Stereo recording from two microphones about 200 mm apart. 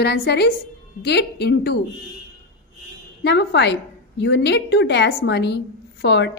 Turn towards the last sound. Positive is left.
turn(degrees=60)  # may be behind; listen again after turning